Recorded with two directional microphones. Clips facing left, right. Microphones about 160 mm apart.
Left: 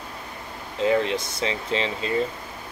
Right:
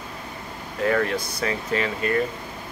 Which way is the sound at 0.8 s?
20° left (ahead or behind).